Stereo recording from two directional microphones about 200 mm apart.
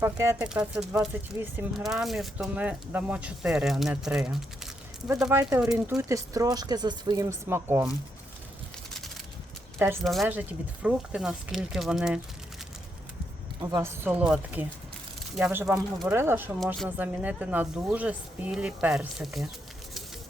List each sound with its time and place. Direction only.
0.0 s speech: 15° right (ahead or behind)
9.7 s speech: 10° right (ahead or behind)
10.0 s speech: centre (ahead or behind)
13.6 s speech: 15° right (ahead or behind)